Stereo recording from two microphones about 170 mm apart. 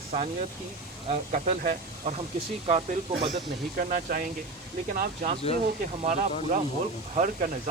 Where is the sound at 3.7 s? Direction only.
55° right (ahead or behind).